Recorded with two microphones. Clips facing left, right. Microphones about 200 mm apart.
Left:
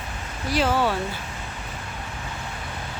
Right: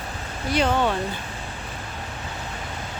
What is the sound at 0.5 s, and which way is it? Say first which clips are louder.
Speech: right 1 dB; 5° left (ahead or behind).